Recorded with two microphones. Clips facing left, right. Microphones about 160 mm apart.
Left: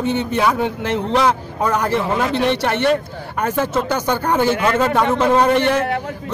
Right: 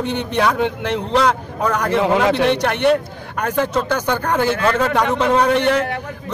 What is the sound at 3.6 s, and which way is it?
A man's voice, 10° left (ahead or behind).